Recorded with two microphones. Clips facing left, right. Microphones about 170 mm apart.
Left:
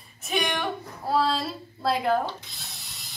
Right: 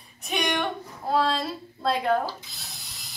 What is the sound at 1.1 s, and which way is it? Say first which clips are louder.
Ratchet: even; 5° left (ahead or behind).